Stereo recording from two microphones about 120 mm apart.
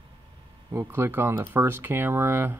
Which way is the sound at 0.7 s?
20° right (ahead or behind).